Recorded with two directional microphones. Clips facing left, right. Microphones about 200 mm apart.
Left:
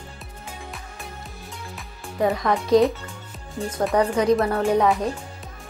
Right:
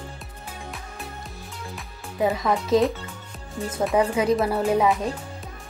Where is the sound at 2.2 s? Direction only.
Centre (ahead or behind).